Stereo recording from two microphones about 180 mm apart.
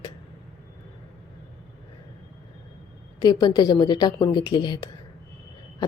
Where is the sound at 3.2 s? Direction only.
20° left (ahead or behind).